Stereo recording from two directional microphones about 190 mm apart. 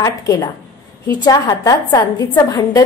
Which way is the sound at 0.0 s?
20° left (ahead or behind).